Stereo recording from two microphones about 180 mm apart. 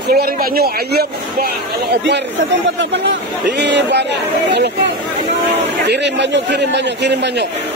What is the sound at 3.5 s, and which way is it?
A man's voice, 70° right (ahead or behind).